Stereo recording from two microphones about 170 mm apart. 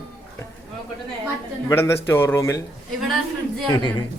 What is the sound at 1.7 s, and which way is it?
Speech, 15° left (ahead or behind).